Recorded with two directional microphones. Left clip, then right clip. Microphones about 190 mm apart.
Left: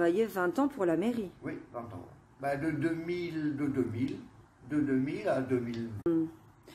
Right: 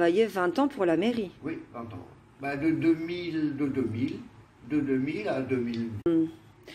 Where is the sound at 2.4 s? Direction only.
25° left (ahead or behind).